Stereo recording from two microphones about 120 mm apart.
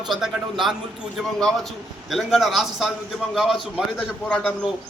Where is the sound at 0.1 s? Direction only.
Centre (ahead or behind).